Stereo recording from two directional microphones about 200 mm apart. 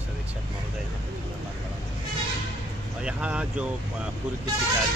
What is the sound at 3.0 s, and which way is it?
Speech, 5° right (ahead or behind).